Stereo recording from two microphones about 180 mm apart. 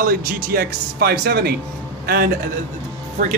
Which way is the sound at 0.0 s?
55° right (ahead or behind).